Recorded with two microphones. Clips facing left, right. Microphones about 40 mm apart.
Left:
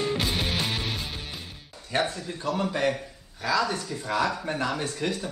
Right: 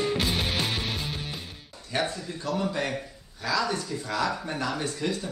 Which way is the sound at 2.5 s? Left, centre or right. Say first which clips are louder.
Left 1 dB; left.